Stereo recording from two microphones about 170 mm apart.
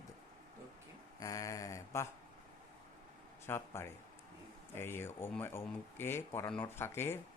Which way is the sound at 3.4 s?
15° left (ahead or behind).